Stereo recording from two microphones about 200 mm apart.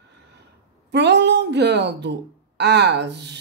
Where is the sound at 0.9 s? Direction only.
60° right (ahead or behind).